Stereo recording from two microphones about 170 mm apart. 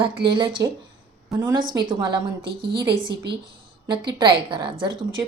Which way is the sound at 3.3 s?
75° right (ahead or behind).